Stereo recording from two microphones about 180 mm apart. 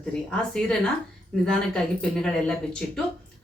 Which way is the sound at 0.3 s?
5° left (ahead or behind).